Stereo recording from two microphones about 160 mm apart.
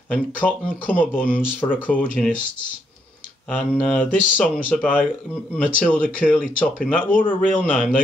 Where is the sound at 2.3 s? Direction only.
55° left (ahead or behind).